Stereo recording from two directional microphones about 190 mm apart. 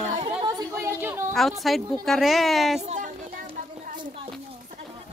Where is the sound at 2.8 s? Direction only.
35° right (ahead or behind).